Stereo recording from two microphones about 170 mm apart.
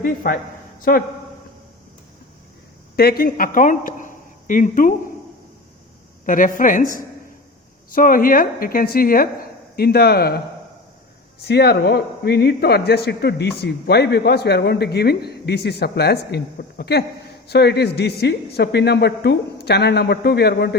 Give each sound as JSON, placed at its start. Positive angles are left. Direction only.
{"t": 0.0, "sound": "speech", "side_deg": 55}
{"t": 2.9, "sound": "speech", "side_deg": 65}
{"t": 6.2, "sound": "speech", "side_deg": 50}
{"t": 7.9, "sound": "speech", "side_deg": 55}
{"t": 11.4, "sound": "speech", "side_deg": 70}